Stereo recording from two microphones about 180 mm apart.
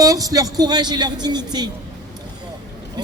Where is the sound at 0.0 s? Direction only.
20° right (ahead or behind).